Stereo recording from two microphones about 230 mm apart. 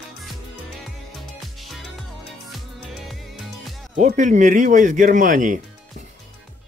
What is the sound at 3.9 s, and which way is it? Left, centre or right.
Speech, right.